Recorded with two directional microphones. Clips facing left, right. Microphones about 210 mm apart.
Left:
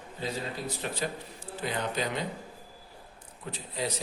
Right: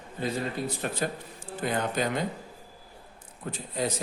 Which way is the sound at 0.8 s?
50° right (ahead or behind).